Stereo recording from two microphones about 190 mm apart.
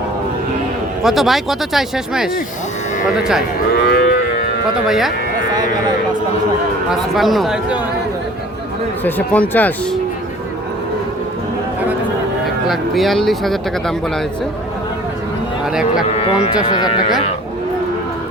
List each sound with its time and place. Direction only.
1.0 s speech: centre (ahead or behind)
3.7 s livestock: 55° left (ahead or behind)
4.9 s speech: centre (ahead or behind)
7.1 s speech: centre (ahead or behind)
9.0 s speech: 10° left (ahead or behind)
12.6 s speech: centre (ahead or behind)
16.0 s speech: 30° left (ahead or behind)